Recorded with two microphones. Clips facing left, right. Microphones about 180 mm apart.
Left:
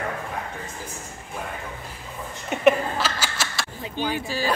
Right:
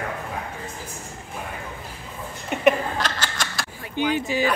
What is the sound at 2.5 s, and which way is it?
Laughter, centre (ahead or behind).